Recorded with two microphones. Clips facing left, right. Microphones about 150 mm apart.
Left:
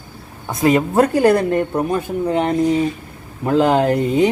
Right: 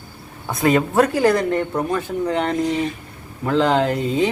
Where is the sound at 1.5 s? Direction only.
15° left (ahead or behind).